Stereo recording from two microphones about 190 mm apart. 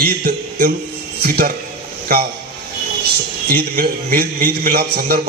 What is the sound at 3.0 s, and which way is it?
A man's voice, 55° right (ahead or behind).